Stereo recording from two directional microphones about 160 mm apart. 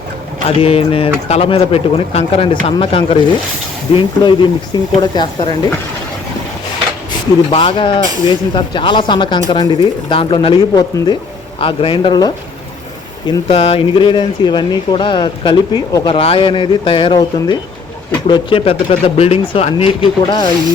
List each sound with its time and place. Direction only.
0.4 s speech: 40° left (ahead or behind)
7.5 s speech: 35° left (ahead or behind)
13.5 s speech: 40° left (ahead or behind)
16.1 s speech: 35° left (ahead or behind)